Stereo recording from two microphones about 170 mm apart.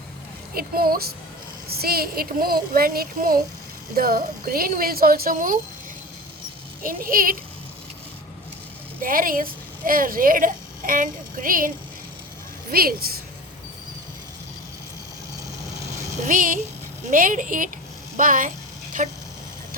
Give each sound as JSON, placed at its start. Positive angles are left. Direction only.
{"t": 0.5, "sound": "speech", "side_deg": -60}
{"t": 6.8, "sound": "speech", "side_deg": -55}
{"t": 9.0, "sound": "a woman's voice", "side_deg": -55}
{"t": 12.7, "sound": "speech", "side_deg": -60}
{"t": 16.2, "sound": "speech", "side_deg": -50}